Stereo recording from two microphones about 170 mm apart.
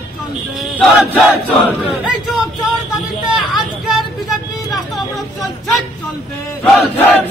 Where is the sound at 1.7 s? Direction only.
5° right (ahead or behind).